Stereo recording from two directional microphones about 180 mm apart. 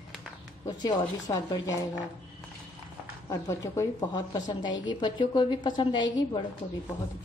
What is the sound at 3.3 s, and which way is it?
A woman's voice, 15° left (ahead or behind).